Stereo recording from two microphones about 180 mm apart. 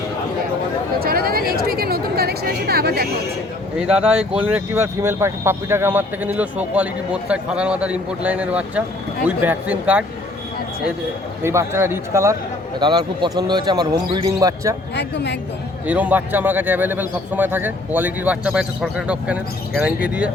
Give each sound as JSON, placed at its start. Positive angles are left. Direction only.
{"t": 0.9, "sound": "speech", "side_deg": -55}
{"t": 3.8, "sound": "speech", "side_deg": -5}
{"t": 11.4, "sound": "speech", "side_deg": -15}
{"t": 14.9, "sound": "a woman's voice", "side_deg": 70}
{"t": 15.9, "sound": "speech", "side_deg": -10}